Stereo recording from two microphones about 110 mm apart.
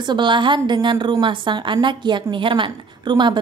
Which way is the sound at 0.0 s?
45° right (ahead or behind).